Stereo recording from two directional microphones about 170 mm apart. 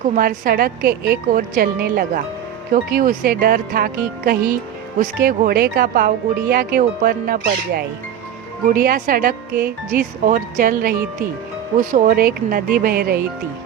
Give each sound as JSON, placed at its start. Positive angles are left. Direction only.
{"t": 0.2, "sound": "speech", "side_deg": -60}